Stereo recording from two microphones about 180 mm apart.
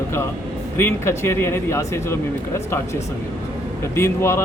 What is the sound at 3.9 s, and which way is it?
Speech, 15° left (ahead or behind).